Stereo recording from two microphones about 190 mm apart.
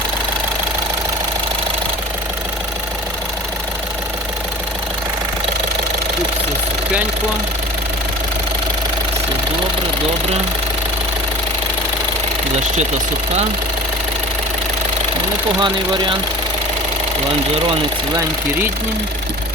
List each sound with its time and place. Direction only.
15.6 s speech: 25° right (ahead or behind)
17.7 s speech: 20° right (ahead or behind)